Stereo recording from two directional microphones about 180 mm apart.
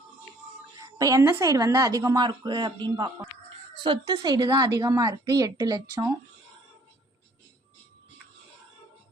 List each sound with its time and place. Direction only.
0.8 s a woman's voice: 20° right (ahead or behind)